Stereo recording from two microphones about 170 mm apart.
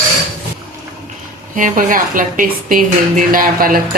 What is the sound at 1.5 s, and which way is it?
A woman's voice, 50° right (ahead or behind).